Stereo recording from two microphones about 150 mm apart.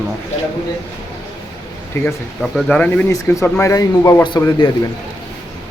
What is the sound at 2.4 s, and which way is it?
Speech, 5° left (ahead or behind).